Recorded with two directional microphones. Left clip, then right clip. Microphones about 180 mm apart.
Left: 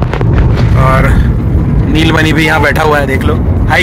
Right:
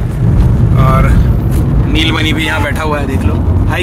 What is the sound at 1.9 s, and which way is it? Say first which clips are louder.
Speech: left 4 dB; 35° left (ahead or behind).